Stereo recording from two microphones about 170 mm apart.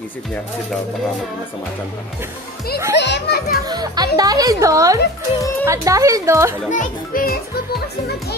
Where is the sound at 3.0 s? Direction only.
80° left; by 3.6 s 65° left (ahead or behind).